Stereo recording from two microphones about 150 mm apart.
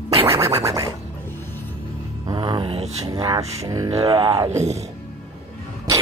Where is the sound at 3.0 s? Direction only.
25° right (ahead or behind).